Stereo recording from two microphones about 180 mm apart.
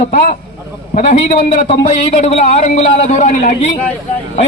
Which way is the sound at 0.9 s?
40° left (ahead or behind).